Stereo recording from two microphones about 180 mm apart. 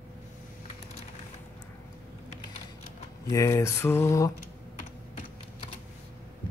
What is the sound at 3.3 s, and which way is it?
Mantra, 15° left (ahead or behind).